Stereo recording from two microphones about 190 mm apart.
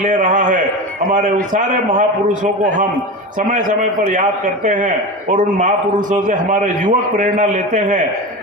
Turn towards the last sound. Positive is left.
turn(degrees=-40)  # may be behind; listen again after turning